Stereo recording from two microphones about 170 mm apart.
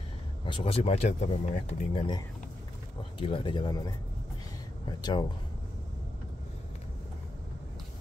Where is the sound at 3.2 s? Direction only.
30° left (ahead or behind).